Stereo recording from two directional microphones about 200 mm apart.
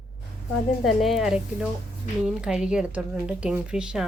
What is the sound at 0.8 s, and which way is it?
Speech, centre (ahead or behind).